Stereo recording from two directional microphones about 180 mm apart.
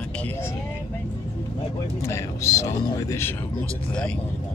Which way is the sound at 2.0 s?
15° left (ahead or behind).